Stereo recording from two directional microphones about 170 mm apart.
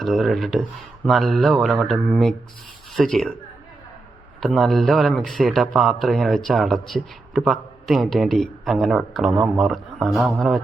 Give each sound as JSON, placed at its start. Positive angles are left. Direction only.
{"t": 0.0, "sound": "a man's voice", "side_deg": 0}
{"t": 4.4, "sound": "a man's voice", "side_deg": 0}